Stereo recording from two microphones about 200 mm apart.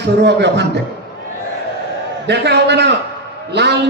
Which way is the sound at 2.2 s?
55° right (ahead or behind).